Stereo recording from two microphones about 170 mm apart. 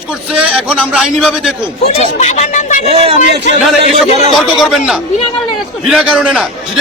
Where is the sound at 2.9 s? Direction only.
35° right (ahead or behind).